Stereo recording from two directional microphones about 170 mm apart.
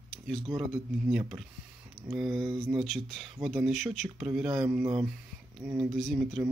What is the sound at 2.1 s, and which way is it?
Speech, centre (ahead or behind).